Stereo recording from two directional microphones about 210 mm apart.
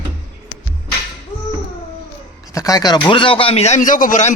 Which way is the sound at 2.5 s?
15° left (ahead or behind).